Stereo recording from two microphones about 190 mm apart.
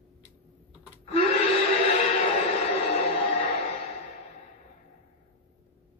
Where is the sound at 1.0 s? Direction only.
30° left (ahead or behind).